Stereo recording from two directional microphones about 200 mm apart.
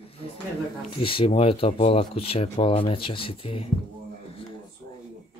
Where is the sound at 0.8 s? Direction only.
25° left (ahead or behind).